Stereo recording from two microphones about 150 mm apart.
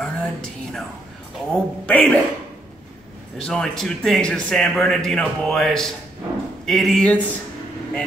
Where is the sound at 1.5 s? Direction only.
5° left (ahead or behind).